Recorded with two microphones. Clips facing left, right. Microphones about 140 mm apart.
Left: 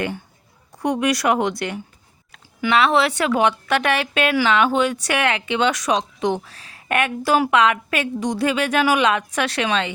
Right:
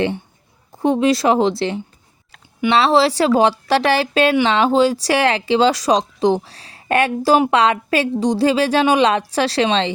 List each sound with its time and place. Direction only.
0.7 s a woman's voice: 25° right (ahead or behind)